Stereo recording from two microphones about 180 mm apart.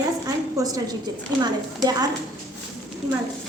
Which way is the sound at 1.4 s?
20° right (ahead or behind).